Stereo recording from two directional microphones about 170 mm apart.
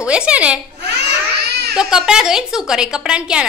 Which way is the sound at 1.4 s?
70° right (ahead or behind).